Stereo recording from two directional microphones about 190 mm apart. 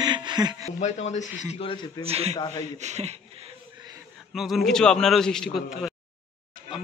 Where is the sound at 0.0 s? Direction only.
25° right (ahead or behind).